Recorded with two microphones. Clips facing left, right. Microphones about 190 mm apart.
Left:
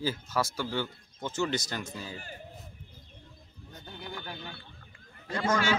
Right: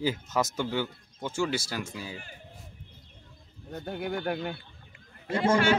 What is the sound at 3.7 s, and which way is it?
Speech, 60° right (ahead or behind).